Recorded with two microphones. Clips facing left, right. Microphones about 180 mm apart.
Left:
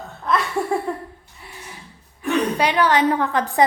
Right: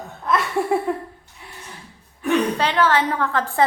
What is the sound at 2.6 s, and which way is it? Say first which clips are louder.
A woman's voice: left 1 dB; 15° left (ahead or behind).